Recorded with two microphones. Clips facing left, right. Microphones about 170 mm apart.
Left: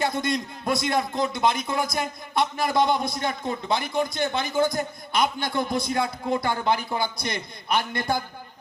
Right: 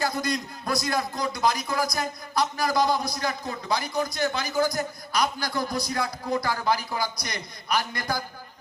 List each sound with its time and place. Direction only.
0.0 s a man's voice: 25° left (ahead or behind)